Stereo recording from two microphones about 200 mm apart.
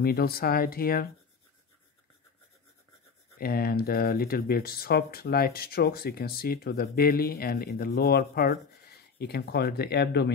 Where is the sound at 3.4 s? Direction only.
50° left (ahead or behind).